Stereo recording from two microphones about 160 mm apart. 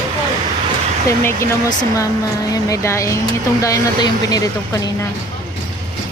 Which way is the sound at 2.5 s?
20° left (ahead or behind).